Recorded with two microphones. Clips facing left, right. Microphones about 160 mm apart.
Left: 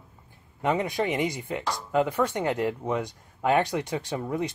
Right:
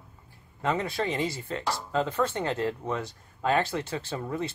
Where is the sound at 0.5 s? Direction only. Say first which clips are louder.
Left 3 dB; 15° left (ahead or behind).